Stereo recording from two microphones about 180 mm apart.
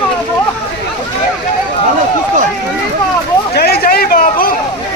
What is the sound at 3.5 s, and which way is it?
Hubbub, 60° left (ahead or behind).